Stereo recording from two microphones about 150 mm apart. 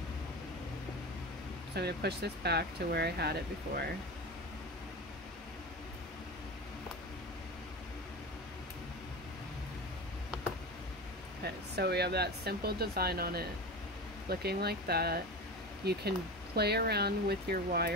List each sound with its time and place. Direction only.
1.8 s speech: 90° right
11.4 s speech: 90° right